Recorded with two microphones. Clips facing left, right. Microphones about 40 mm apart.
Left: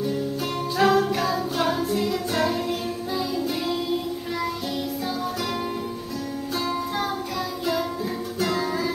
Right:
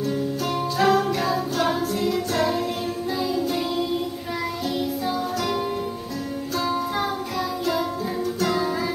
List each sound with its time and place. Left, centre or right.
0.7 s music: centre
8.4 s music: centre